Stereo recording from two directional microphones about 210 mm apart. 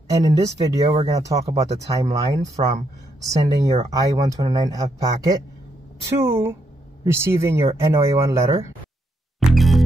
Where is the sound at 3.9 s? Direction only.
15° right (ahead or behind).